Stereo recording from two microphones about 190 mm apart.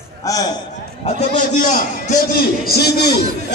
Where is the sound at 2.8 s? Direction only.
60° left (ahead or behind).